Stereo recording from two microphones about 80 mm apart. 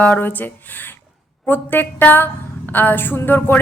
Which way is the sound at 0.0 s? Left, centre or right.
Left.